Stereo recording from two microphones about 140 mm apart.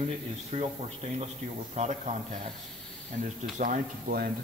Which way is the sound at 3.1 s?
65° right (ahead or behind).